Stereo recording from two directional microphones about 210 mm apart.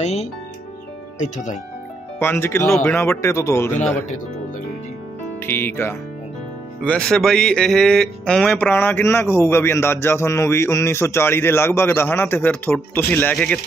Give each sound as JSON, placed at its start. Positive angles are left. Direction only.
{"t": 0.0, "sound": "speech", "side_deg": 30}
{"t": 2.1, "sound": "speech", "side_deg": 10}
{"t": 5.5, "sound": "speech", "side_deg": 10}